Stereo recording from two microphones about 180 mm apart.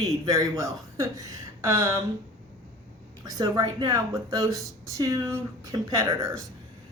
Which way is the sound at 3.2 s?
20° right (ahead or behind).